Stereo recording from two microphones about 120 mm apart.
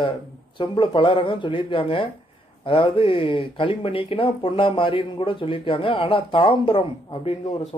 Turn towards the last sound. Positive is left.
turn(degrees=50)  # may be behind; listen again after turning